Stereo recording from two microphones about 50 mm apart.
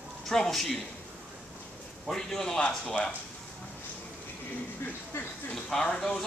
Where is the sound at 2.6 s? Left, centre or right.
Centre.